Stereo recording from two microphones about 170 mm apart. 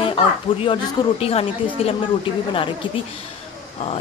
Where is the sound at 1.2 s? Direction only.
35° left (ahead or behind).